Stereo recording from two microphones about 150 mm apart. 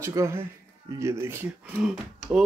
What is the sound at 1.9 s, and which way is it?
Speech, 5° right (ahead or behind).